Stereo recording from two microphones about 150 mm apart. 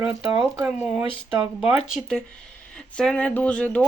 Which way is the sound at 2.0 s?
5° left (ahead or behind).